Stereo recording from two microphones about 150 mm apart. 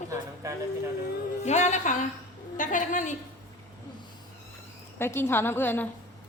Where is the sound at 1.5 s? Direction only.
50° left (ahead or behind).